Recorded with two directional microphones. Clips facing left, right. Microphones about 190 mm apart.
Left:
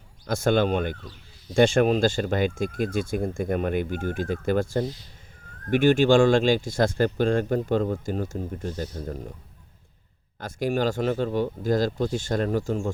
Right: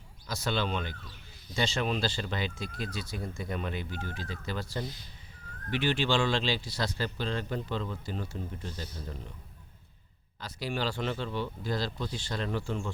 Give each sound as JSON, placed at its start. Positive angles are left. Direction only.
{"t": 0.3, "sound": "speech", "side_deg": 50}
{"t": 10.4, "sound": "speech", "side_deg": 45}